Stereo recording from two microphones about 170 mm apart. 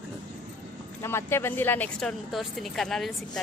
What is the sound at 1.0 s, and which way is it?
Speech, 15° left (ahead or behind).